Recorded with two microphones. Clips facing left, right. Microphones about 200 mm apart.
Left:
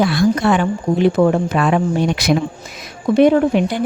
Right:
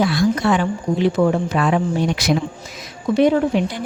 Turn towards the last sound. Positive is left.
turn(degrees=60)  # may be behind; listen again after turning